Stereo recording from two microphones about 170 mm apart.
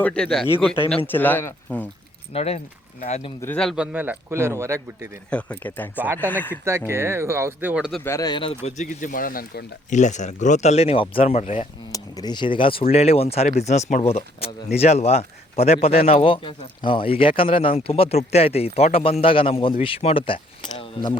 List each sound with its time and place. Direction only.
0.0 s a man's voice: 5° left (ahead or behind)
2.3 s speech: 35° left (ahead or behind)
3.4 s a man's voice: 5° left (ahead or behind)
3.9 s speech: 10° right (ahead or behind)
5.3 s speech: 10° left (ahead or behind)
6.7 s speech: 15° right (ahead or behind)
8.0 s speech: 20° left (ahead or behind); by 11.6 s 40° left (ahead or behind)
11.9 s speech: 20° left (ahead or behind)